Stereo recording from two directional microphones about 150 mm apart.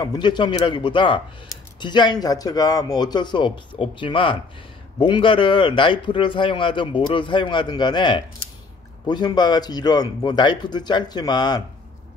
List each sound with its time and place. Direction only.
0.0 s speech: 30° left (ahead or behind)